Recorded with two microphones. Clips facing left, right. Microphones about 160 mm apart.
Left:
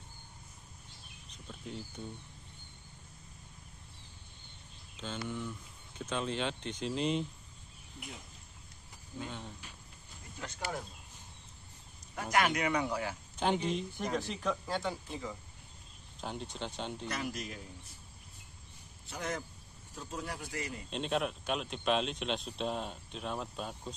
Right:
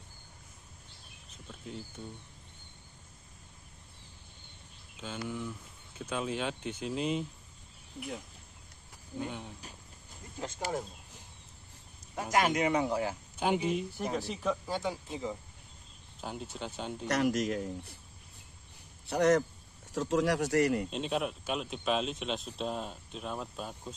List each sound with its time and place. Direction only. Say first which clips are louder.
4.9 s speech: right 1 dB; 10° right (ahead or behind)
9.2 s speech: right 4 dB; 10° right (ahead or behind)
10.4 s speech: right 4 dB; 20° right (ahead or behind)
12.2 s speech: right 2 dB; 25° right (ahead or behind)
13.4 s speech: right 2 dB; 10° right (ahead or behind)
15.0 s speech: right 4 dB; 20° right (ahead or behind)
16.2 s speech: right 1 dB; 5° right (ahead or behind)
17.1 s a man's voice: right 10 dB; 80° right
19.0 s a man's voice: right 13 dB; 70° right (ahead or behind)
19.9 s speech: right 13 dB; 90° right; by 20.9 s 70° right (ahead or behind)
20.9 s speech: right 1 dB; 5° right (ahead or behind)